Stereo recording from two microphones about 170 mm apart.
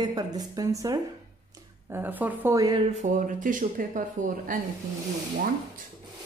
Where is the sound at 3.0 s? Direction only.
50° right (ahead or behind).